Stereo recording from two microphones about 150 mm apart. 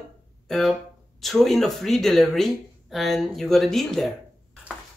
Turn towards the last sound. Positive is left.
turn(degrees=0)  # may be behind; listen again after turning